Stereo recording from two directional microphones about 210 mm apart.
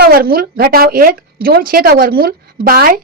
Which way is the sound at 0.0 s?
45° right (ahead or behind).